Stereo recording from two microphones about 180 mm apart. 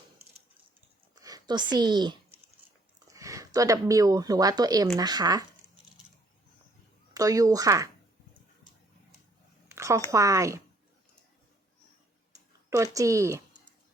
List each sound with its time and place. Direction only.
1.1 s speech: 20° right (ahead or behind)
7.1 s speech: 20° right (ahead or behind)
9.6 s a sound: 15° right (ahead or behind)
10.1 s speech: 15° right (ahead or behind)
12.7 s speech: 20° right (ahead or behind)